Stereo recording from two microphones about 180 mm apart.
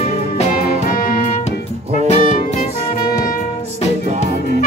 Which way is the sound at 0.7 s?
55° left (ahead or behind).